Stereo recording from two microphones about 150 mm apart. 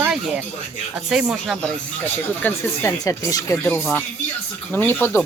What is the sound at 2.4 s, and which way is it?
Speech, 20° left (ahead or behind).